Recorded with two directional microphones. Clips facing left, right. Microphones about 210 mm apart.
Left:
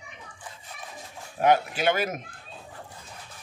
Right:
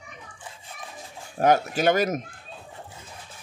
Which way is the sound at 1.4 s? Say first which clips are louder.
Right 2 dB; 45° right (ahead or behind).